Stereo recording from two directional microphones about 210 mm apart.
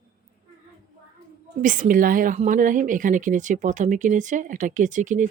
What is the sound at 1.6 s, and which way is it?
Speech, 40° right (ahead or behind).